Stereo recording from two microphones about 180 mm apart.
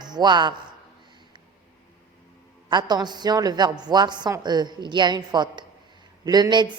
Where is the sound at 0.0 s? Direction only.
25° right (ahead or behind).